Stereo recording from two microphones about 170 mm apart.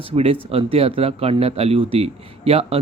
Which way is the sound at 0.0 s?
35° right (ahead or behind).